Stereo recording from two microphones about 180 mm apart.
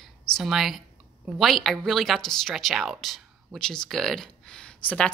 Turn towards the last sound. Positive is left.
turn(degrees=5)  # may be behind; listen again after turning